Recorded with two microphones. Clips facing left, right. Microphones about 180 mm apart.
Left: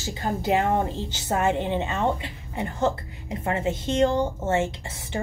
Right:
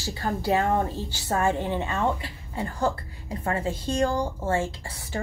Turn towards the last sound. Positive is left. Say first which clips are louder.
# left 2 dB
turn(degrees=25)  # may be behind; listen again after turning